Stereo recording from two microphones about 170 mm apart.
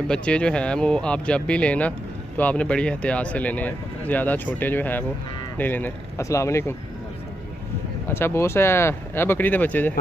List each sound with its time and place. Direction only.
0.1 s speech: 5° left (ahead or behind)
8.1 s speech: 15° left (ahead or behind)